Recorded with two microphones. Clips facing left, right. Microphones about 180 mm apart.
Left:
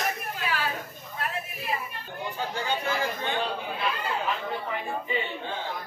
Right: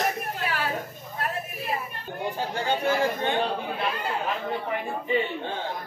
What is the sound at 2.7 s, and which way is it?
A man's voice, 45° right (ahead or behind).